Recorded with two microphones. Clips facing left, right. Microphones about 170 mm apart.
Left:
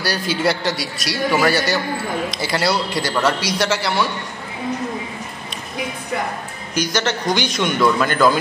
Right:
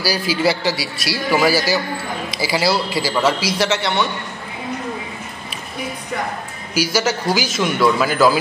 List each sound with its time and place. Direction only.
0.0 s a man's voice: 5° right (ahead or behind)
6.7 s a man's voice: 5° right (ahead or behind)